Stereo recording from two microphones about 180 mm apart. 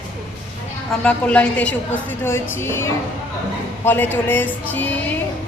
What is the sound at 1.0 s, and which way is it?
A woman's voice, 5° left (ahead or behind).